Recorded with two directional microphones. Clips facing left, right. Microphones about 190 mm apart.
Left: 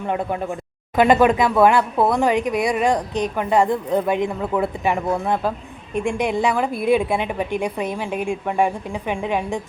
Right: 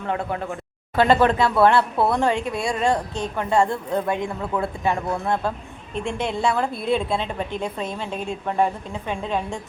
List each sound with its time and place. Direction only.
0.0 s a woman's voice: 15° left (ahead or behind)